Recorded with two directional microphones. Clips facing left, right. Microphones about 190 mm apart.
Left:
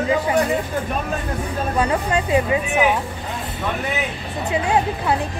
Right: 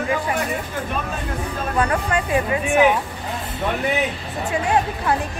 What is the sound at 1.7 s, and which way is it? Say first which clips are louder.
Speech: even; 20° left (ahead or behind).